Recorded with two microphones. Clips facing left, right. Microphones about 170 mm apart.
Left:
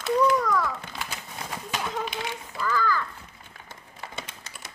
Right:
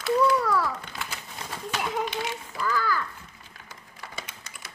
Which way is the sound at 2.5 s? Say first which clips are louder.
Left 2 dB; 10° right (ahead or behind).